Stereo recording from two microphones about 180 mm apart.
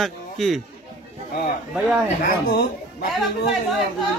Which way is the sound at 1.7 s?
5° right (ahead or behind).